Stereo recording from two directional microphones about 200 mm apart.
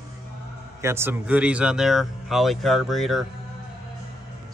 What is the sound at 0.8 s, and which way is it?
Speech, 10° right (ahead or behind).